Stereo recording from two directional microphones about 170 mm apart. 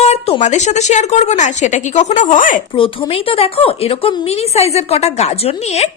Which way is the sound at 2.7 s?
30° left (ahead or behind).